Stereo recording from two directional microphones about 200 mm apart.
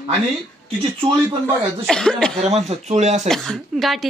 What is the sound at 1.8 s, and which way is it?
Speech, 5° left (ahead or behind).